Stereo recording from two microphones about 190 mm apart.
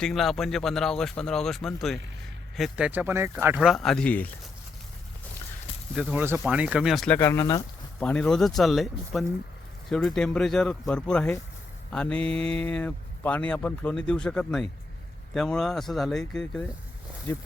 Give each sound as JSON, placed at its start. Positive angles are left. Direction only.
{"t": 0.0, "sound": "a man's voice", "side_deg": 0}
{"t": 6.0, "sound": "a man's voice", "side_deg": -5}
{"t": 7.2, "sound": "speech", "side_deg": 15}
{"t": 8.0, "sound": "a man's voice", "side_deg": 5}